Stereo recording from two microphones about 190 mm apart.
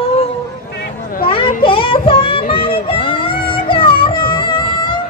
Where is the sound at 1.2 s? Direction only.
25° left (ahead or behind).